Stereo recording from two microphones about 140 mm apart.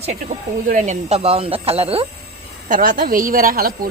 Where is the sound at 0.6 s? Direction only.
65° right (ahead or behind); by 2.0 s 45° right (ahead or behind).